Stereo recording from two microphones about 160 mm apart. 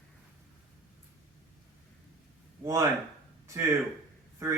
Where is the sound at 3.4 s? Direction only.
20° right (ahead or behind).